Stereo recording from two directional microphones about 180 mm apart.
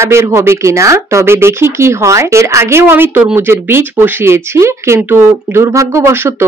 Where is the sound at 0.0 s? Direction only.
15° right (ahead or behind).